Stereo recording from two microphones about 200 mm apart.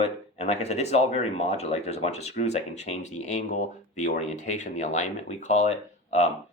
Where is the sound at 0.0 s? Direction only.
30° left (ahead or behind).